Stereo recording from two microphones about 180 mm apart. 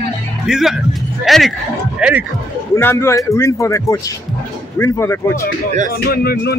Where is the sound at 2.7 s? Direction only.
15° left (ahead or behind).